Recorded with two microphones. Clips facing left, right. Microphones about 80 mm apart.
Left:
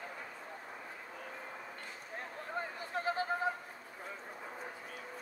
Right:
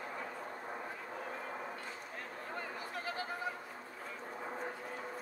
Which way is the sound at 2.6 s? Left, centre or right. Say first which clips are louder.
Left 5 dB; left.